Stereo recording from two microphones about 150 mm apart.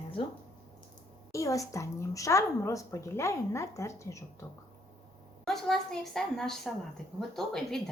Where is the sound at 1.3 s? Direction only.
20° left (ahead or behind).